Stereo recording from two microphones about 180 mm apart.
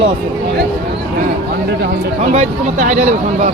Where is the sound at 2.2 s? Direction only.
40° right (ahead or behind).